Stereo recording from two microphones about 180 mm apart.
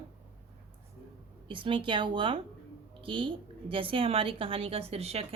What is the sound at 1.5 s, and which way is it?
A woman's voice, 30° right (ahead or behind).